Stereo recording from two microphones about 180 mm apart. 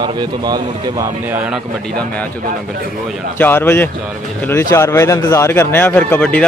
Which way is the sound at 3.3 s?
10° left (ahead or behind).